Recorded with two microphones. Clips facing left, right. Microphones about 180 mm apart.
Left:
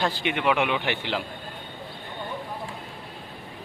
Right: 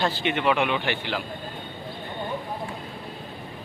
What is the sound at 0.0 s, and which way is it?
Speech, 10° left (ahead or behind).